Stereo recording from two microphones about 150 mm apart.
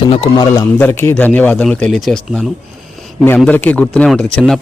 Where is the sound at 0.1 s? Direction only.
35° left (ahead or behind).